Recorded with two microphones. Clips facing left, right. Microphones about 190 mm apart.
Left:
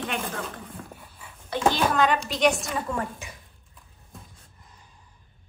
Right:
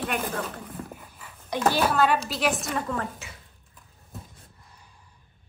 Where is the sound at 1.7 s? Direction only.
5° right (ahead or behind).